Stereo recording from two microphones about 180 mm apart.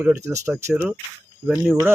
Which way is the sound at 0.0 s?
15° right (ahead or behind).